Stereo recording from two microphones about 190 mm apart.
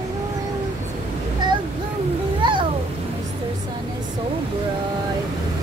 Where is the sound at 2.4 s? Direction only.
25° right (ahead or behind).